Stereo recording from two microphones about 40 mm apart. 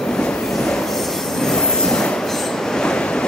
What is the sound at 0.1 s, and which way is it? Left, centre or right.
Train, left.